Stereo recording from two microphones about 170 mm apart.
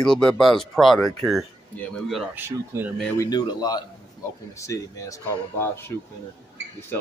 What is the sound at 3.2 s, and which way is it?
A man's voice, 25° left (ahead or behind).